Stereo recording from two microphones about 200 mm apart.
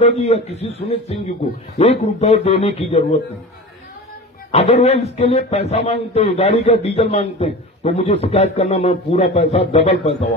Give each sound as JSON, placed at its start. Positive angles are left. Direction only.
{"t": 0.0, "sound": "a man's voice", "side_deg": 30}
{"t": 4.5, "sound": "a man's voice", "side_deg": 30}